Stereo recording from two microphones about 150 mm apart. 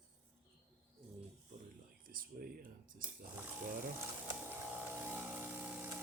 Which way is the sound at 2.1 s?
70° right (ahead or behind).